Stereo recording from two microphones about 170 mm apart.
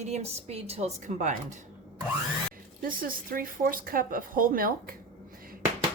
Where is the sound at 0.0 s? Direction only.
40° right (ahead or behind).